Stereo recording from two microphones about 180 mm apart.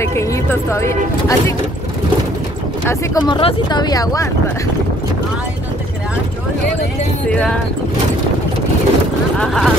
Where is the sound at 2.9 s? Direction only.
20° left (ahead or behind).